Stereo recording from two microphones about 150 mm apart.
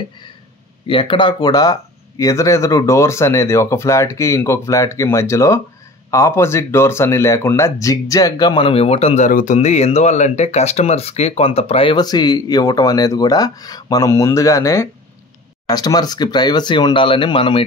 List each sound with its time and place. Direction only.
0.8 s speech: 35° left (ahead or behind)
9.3 s speech: 55° left (ahead or behind); by 17.6 s 35° left (ahead or behind)